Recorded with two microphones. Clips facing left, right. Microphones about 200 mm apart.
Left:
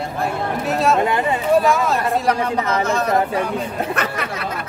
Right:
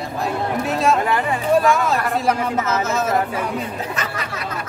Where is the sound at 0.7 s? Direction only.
Centre (ahead or behind).